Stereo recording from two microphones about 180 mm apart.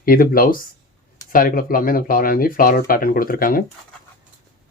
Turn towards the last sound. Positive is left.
turn(degrees=55)  # may be behind; listen again after turning